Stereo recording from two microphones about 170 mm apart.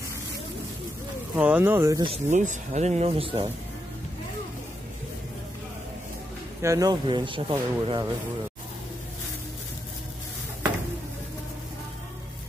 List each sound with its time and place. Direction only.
1.3 s speech: 10° right (ahead or behind)
2.2 s speech: 45° right (ahead or behind)
6.6 s speech: 20° right (ahead or behind)